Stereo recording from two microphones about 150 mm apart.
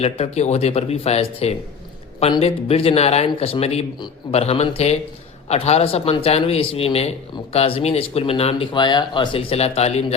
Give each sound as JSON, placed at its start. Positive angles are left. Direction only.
{"t": 0.0, "sound": "speech", "side_deg": 45}